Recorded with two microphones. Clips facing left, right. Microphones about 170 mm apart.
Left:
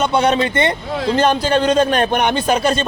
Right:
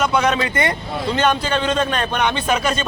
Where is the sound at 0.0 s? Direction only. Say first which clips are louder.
Left 3 dB; 30° left (ahead or behind).